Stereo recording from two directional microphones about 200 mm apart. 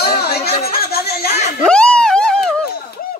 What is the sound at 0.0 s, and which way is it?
Chatter, 50° left (ahead or behind).